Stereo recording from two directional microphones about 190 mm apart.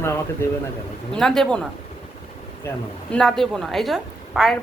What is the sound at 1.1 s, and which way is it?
Speech, 5° left (ahead or behind).